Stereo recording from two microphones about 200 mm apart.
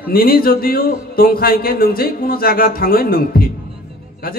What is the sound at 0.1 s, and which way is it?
A man's voice, 45° left (ahead or behind).